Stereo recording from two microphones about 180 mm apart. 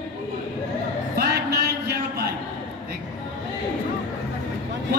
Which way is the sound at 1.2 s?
65° right (ahead or behind).